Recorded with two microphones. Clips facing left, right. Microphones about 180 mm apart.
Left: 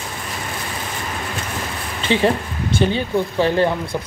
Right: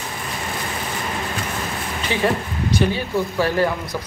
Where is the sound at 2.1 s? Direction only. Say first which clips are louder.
Left 4 dB; 25° left (ahead or behind).